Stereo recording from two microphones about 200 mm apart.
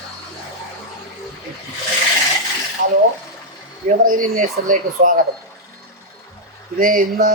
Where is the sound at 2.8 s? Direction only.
45° right (ahead or behind).